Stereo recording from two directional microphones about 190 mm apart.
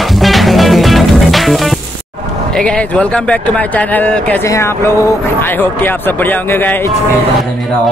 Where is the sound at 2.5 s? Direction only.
5° left (ahead or behind).